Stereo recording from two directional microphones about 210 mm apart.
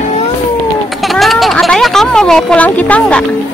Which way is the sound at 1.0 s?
Centre (ahead or behind).